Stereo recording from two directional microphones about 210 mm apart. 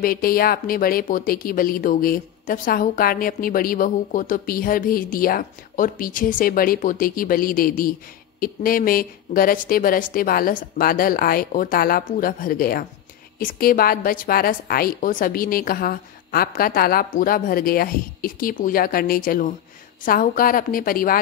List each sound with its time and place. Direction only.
0.0 s a woman's voice: 45° left (ahead or behind)